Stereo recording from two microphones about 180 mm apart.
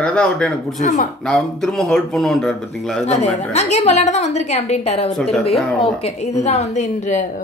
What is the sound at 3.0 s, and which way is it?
A woman's voice, 40° left (ahead or behind).